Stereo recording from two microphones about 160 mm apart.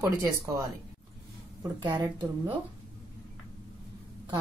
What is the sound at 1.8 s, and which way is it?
Speech, 30° right (ahead or behind).